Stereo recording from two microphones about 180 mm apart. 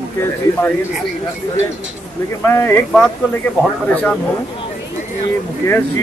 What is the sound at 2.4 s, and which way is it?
Speech, 15° left (ahead or behind).